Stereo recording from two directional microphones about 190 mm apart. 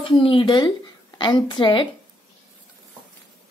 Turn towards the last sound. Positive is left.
turn(degrees=25)  # may be behind; listen again after turning